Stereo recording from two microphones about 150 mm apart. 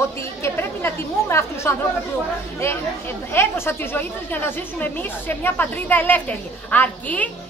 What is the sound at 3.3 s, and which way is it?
A woman's voice, 15° left (ahead or behind).